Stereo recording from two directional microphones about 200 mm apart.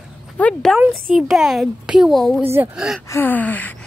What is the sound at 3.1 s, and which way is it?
Speech, 10° left (ahead or behind).